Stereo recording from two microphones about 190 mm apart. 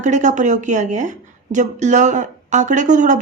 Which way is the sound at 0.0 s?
40° right (ahead or behind).